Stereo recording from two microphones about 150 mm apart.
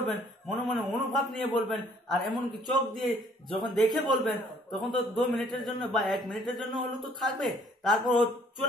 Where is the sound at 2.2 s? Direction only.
30° right (ahead or behind).